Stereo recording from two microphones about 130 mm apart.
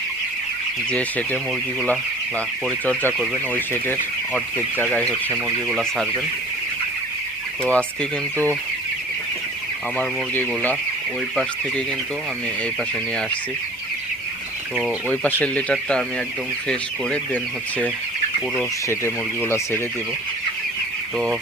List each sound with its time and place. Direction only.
0.9 s speech: 10° left (ahead or behind)
2.6 s speech: 10° left (ahead or behind)
7.6 s speech: 10° left (ahead or behind)
10.0 s speech: 15° left (ahead or behind)
14.8 s speech: 10° left (ahead or behind)
18.9 s speech: 20° left (ahead or behind)